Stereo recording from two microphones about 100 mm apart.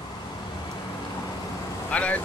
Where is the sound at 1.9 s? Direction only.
15° left (ahead or behind).